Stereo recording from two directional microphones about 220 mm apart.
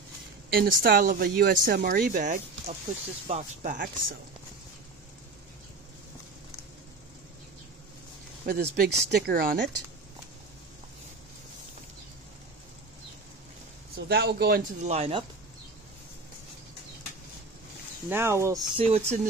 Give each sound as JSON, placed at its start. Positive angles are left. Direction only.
{"t": 0.5, "sound": "a woman's voice", "side_deg": -45}
{"t": 8.5, "sound": "a woman's voice", "side_deg": -45}
{"t": 13.9, "sound": "a woman's voice", "side_deg": -45}
{"t": 14.8, "sound": "speech", "side_deg": -30}
{"t": 18.1, "sound": "speech", "side_deg": -10}
{"t": 18.9, "sound": "speech", "side_deg": -30}